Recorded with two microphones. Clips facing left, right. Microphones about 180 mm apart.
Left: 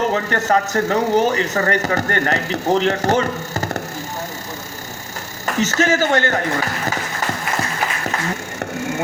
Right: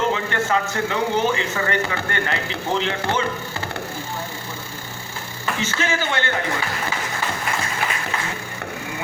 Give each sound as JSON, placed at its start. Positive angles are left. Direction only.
{"t": 0.1, "sound": "speech", "side_deg": 40}
{"t": 5.5, "sound": "a man's voice", "side_deg": 45}